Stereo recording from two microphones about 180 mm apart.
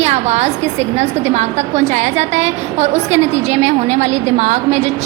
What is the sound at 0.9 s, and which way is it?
A woman's voice, 35° right (ahead or behind).